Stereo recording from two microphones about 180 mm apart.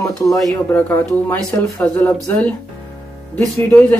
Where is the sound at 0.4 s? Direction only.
5° left (ahead or behind).